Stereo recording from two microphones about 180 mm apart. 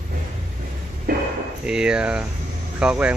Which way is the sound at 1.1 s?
50° right (ahead or behind).